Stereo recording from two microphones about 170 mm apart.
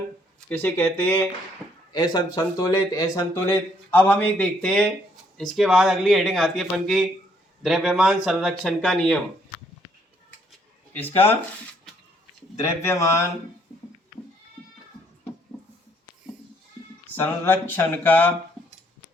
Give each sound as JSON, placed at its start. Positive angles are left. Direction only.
{"t": 0.3, "sound": "speech", "side_deg": 10}
{"t": 1.9, "sound": "speech", "side_deg": 20}
{"t": 10.9, "sound": "speech", "side_deg": 10}
{"t": 12.6, "sound": "speech", "side_deg": 15}
{"t": 17.2, "sound": "speech", "side_deg": 15}